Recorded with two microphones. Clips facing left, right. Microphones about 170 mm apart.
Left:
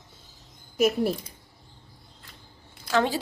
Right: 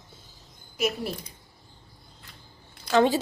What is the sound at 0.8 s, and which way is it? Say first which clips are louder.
Speech: left 6 dB; 45° left (ahead or behind).